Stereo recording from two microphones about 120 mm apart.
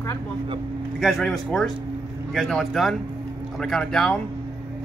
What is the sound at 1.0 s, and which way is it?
Speech, centre (ahead or behind).